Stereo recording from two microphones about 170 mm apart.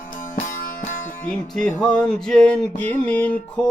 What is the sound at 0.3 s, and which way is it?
Music, 55° left (ahead or behind).